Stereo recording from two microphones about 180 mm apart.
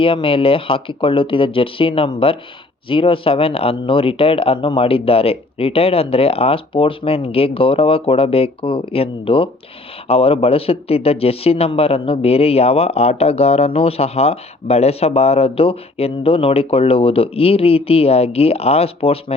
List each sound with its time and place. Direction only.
0.0 s speech: 30° left (ahead or behind)